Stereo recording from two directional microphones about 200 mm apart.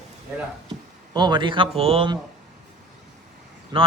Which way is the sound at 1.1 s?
20° right (ahead or behind).